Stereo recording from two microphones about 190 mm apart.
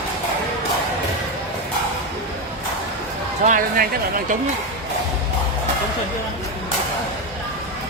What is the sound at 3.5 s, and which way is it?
Speech, 45° right (ahead or behind).